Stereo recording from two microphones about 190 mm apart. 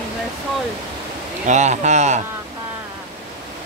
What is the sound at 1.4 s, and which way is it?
Speech, 40° right (ahead or behind).